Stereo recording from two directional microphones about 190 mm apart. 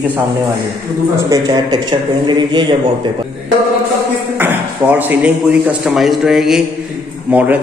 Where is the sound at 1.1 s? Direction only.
20° right (ahead or behind).